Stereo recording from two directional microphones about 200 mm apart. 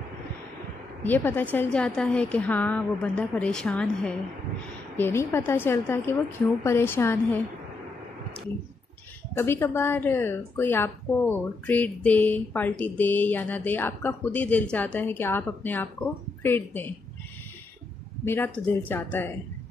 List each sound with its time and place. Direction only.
1.0 s a woman's voice: 10° left (ahead or behind)
9.4 s a woman's voice: 10° left (ahead or behind)
18.2 s a woman's voice: 10° left (ahead or behind)